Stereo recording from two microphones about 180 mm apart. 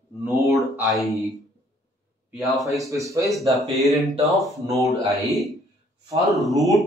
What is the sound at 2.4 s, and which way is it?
Speech, centre (ahead or behind).